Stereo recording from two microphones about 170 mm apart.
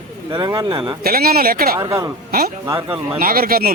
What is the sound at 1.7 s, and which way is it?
Speech, 20° right (ahead or behind).